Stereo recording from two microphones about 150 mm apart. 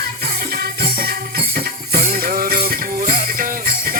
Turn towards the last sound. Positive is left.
turn(degrees=-70)  # may be behind; listen again after turning